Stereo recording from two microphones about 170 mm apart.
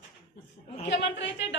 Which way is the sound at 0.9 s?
90° left.